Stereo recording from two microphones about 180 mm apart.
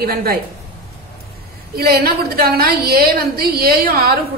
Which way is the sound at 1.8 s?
55° right (ahead or behind).